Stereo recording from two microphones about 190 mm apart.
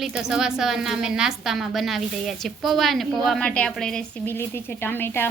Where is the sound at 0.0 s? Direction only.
5° right (ahead or behind).